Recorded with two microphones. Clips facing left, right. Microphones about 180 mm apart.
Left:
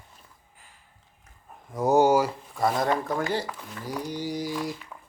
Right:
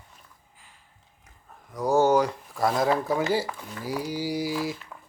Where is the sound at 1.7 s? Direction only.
20° left (ahead or behind).